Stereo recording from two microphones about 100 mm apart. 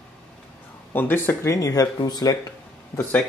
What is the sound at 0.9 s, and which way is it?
Speech, 20° left (ahead or behind).